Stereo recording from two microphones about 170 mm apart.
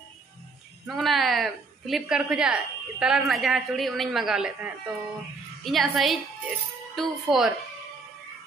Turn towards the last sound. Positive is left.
turn(degrees=0)  # may be behind; listen again after turning